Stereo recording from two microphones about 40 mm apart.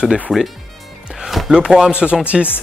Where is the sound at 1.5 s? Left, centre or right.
Right.